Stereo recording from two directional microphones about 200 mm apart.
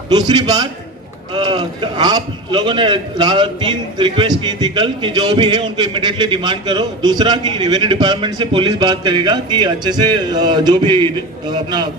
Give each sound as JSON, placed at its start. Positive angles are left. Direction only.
{"t": 0.1, "sound": "a man's voice", "side_deg": -20}